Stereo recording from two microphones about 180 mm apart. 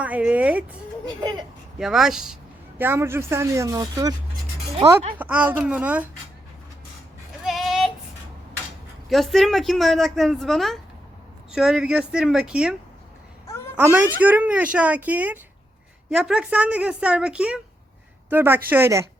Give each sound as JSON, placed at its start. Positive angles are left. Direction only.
{"t": 0.0, "sound": "speech", "side_deg": -5}
{"t": 1.2, "sound": "speech", "side_deg": -25}
{"t": 1.8, "sound": "speech", "side_deg": 0}
{"t": 5.1, "sound": "speech", "side_deg": -10}
{"t": 7.4, "sound": "a sound", "side_deg": 0}
{"t": 9.0, "sound": "speech", "side_deg": 0}
{"t": 13.7, "sound": "a woman's voice", "side_deg": -10}